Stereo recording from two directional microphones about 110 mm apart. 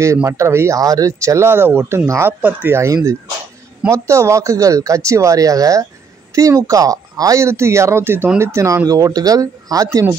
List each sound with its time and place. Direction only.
0.0 s speech: 25° right (ahead or behind)